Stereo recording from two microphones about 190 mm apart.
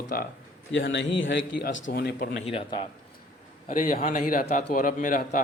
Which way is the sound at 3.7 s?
45° left (ahead or behind).